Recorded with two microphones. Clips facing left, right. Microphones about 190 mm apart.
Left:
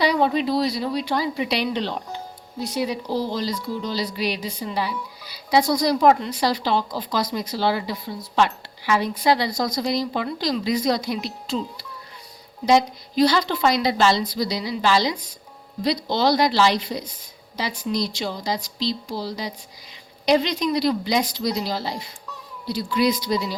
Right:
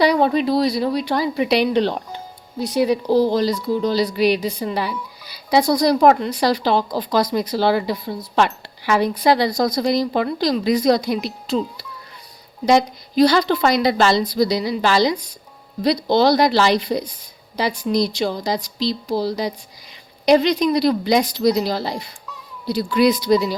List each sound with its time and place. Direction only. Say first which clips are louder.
0.0 s speech: right 4 dB; 55° right (ahead or behind)
2.6 s speech: right 7 dB; 60° right (ahead or behind)
12.6 s speech: right 2 dB; 65° right (ahead or behind)
22.6 s speech: right 5 dB; 65° right (ahead or behind)